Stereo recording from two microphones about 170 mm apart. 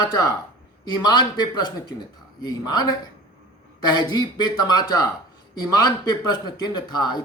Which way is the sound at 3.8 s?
25° left (ahead or behind).